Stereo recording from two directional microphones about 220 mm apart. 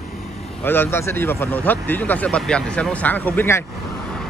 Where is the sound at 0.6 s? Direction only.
10° left (ahead or behind).